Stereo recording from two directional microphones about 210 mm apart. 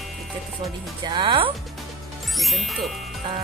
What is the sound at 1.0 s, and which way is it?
Speech, 20° right (ahead or behind).